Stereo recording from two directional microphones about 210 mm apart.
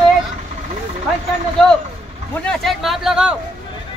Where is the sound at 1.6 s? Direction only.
Centre (ahead or behind).